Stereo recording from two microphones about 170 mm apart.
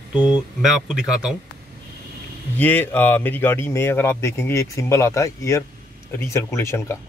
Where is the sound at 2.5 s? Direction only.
10° left (ahead or behind).